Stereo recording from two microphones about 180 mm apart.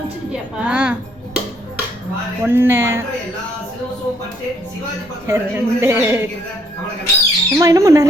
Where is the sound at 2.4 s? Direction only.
10° right (ahead or behind).